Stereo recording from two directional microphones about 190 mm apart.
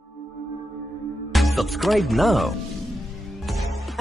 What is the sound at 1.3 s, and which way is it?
Speech, centre (ahead or behind).